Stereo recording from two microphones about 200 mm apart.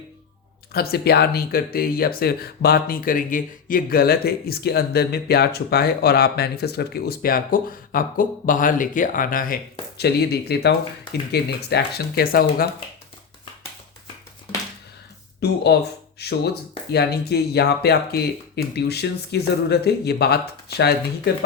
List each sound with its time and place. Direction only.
0.7 s speech: 50° left (ahead or behind)
15.4 s speech: 55° left (ahead or behind)